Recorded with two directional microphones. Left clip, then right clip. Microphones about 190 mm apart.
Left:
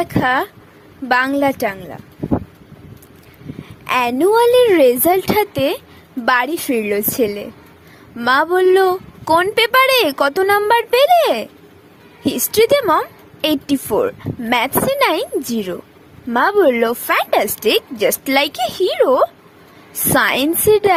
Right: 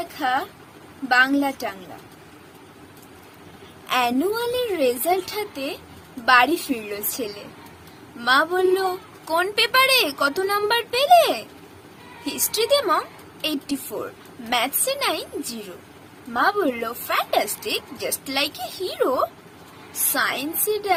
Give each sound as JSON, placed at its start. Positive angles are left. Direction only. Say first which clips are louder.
{"t": 0.0, "sound": "a woman's voice", "louder": "left 7 dB", "side_deg": 50}
{"t": 3.8, "sound": "a woman's voice", "louder": "left 7 dB", "side_deg": 50}